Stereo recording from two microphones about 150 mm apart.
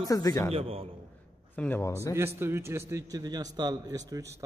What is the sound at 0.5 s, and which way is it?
Speech, 40° right (ahead or behind).